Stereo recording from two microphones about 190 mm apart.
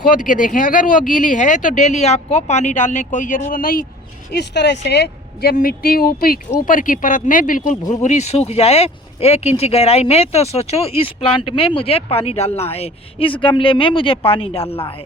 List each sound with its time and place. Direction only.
0.1 s speech: 45° left (ahead or behind)
4.3 s speech: 60° left (ahead or behind); by 14.9 s 30° left (ahead or behind)